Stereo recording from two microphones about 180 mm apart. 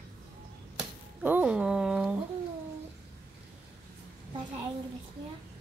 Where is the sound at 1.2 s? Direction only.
10° right (ahead or behind).